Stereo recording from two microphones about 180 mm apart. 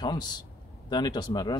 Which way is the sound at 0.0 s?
25° left (ahead or behind).